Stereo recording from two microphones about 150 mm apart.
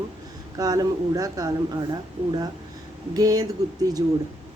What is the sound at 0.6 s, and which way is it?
Speech, 25° right (ahead or behind).